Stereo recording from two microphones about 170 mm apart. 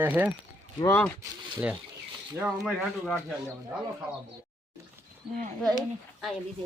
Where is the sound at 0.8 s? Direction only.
10° left (ahead or behind).